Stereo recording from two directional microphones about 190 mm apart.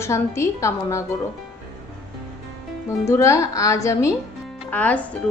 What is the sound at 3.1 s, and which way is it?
A woman's voice, 15° left (ahead or behind).